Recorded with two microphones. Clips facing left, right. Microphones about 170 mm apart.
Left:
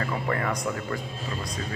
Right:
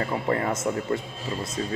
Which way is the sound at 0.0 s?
25° right (ahead or behind).